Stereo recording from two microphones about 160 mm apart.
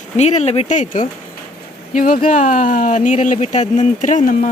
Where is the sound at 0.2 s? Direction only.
45° left (ahead or behind).